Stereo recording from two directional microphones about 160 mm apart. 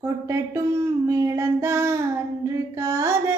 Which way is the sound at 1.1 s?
20° right (ahead or behind).